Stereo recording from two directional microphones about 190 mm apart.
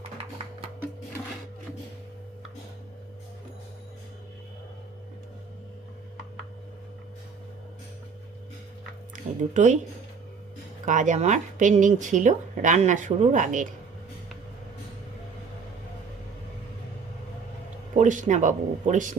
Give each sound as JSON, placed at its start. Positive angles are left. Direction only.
{"t": 9.2, "sound": "music", "side_deg": -45}
{"t": 10.8, "sound": "speech", "side_deg": -40}
{"t": 17.9, "sound": "speech", "side_deg": -40}